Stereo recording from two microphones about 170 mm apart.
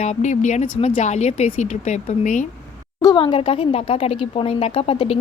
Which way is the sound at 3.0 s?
25° left (ahead or behind).